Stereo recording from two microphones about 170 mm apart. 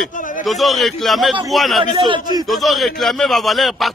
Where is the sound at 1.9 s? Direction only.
25° right (ahead or behind).